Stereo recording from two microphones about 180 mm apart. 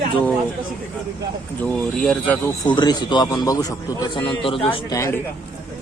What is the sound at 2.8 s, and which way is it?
A man's voice, 25° left (ahead or behind).